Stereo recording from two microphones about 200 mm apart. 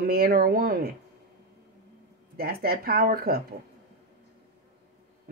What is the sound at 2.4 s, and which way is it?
Speech, 50° right (ahead or behind).